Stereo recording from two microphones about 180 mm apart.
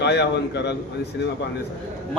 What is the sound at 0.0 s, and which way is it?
Speech, 70° left (ahead or behind).